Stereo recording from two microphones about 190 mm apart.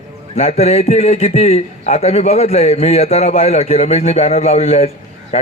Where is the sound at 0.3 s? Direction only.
35° left (ahead or behind).